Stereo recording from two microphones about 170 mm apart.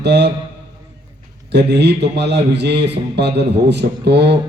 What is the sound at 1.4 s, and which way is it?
Speech, 80° right.